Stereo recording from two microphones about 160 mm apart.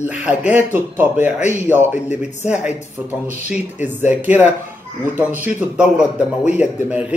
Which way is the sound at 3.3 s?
45° left (ahead or behind).